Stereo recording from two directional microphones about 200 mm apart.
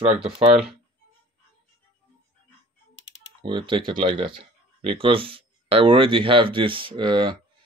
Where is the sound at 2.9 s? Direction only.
65° left (ahead or behind).